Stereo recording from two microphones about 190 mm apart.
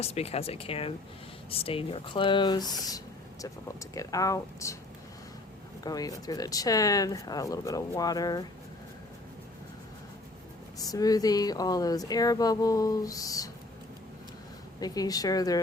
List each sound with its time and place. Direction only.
0.0 s speech: 35° left (ahead or behind); by 4.8 s 15° left (ahead or behind)
5.8 s speech: 20° left (ahead or behind)
10.8 s speech: 20° left (ahead or behind)
14.8 s speech: 20° left (ahead or behind)